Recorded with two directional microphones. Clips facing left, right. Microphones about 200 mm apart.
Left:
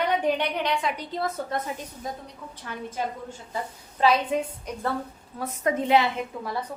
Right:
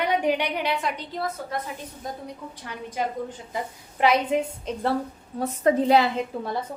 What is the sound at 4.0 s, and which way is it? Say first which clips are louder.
A woman's voice: right 1 dB; 20° right (ahead or behind).